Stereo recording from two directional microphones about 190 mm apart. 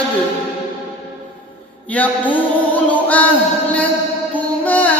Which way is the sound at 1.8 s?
10° left (ahead or behind).